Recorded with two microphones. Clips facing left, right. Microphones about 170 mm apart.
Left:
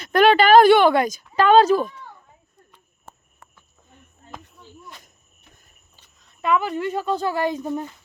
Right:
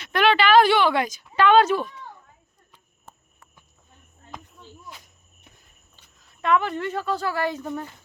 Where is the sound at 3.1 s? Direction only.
70° left (ahead or behind).